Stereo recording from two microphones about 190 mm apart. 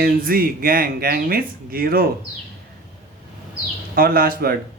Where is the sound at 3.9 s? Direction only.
50° right (ahead or behind).